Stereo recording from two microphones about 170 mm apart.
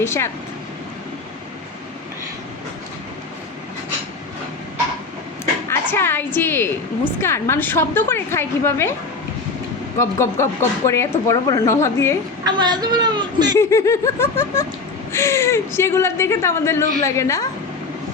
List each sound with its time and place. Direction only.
0.0 s a woman's voice: 15° left (ahead or behind)
5.6 s a woman's voice: 15° left (ahead or behind)
10.0 s a woman's voice: 15° left (ahead or behind)
12.5 s speech: 25° right (ahead or behind)
13.6 s a woman's voice: 15° left (ahead or behind)